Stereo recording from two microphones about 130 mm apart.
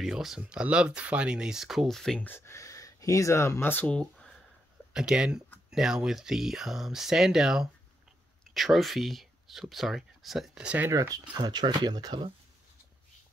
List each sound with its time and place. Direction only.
0.0 s speech: centre (ahead or behind)
2.2 s speech: 20° left (ahead or behind)
4.9 s speech: 5° right (ahead or behind)
10.9 s speech: 25° right (ahead or behind)